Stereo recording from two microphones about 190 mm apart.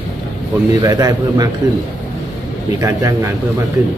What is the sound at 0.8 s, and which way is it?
Speech, 20° right (ahead or behind).